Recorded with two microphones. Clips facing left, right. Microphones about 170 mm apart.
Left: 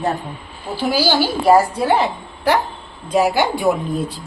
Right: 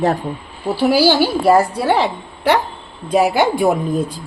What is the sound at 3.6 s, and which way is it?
Speech, 45° right (ahead or behind).